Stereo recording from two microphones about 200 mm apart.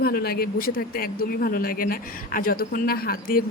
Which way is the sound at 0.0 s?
50° left (ahead or behind).